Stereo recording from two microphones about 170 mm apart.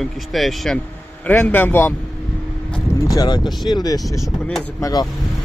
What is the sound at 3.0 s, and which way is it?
Speech, 25° left (ahead or behind).